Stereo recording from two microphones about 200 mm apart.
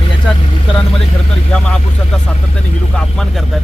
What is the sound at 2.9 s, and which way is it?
Speech, 5° left (ahead or behind).